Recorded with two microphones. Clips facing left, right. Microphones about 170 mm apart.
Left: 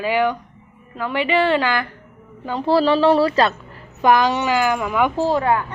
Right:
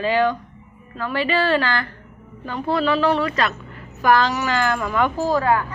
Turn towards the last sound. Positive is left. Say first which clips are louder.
# left 1 dB
turn(degrees=25)  # may be behind; listen again after turning